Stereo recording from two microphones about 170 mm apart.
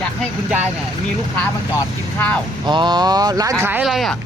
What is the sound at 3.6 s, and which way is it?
Speech, 10° right (ahead or behind).